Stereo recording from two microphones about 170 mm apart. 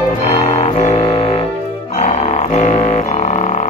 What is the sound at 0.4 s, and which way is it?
Music, 45° left (ahead or behind).